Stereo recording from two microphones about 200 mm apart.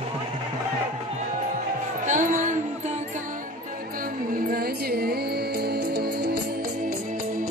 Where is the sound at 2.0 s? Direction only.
40° right (ahead or behind).